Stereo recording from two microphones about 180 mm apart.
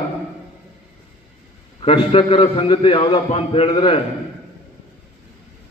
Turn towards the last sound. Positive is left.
turn(degrees=30)  # may be behind; listen again after turning